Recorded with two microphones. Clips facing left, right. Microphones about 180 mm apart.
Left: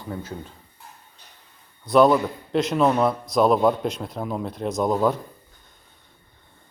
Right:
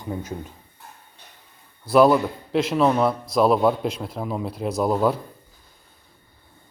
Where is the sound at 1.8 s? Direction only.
5° right (ahead or behind).